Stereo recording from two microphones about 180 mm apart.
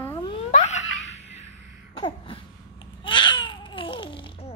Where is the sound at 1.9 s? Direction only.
30° left (ahead or behind).